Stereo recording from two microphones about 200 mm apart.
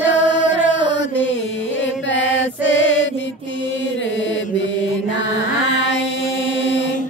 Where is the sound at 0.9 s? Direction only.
65° left (ahead or behind).